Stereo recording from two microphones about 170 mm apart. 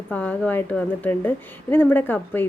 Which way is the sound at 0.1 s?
10° left (ahead or behind).